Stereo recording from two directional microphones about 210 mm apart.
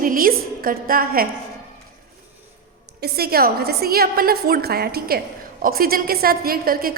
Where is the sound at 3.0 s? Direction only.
50° right (ahead or behind).